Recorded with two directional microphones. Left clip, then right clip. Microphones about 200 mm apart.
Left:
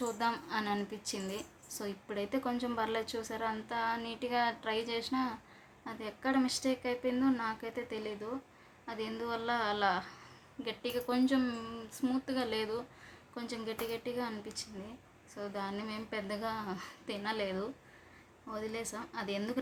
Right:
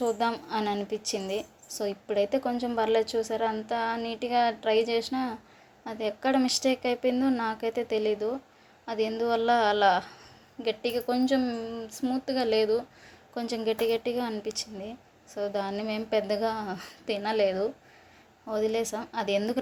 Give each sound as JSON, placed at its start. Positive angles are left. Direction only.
{"t": 0.0, "sound": "a woman's voice", "side_deg": -20}